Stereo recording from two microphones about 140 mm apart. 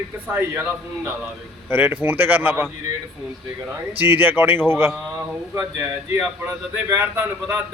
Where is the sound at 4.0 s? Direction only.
15° right (ahead or behind).